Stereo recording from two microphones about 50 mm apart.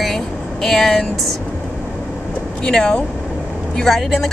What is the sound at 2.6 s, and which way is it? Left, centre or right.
Speech, centre.